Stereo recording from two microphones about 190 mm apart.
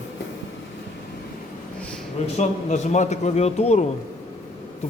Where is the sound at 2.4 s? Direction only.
40° left (ahead or behind).